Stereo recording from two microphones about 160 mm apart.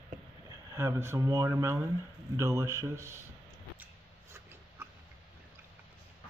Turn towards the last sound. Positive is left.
turn(degrees=-15)  # may be behind; listen again after turning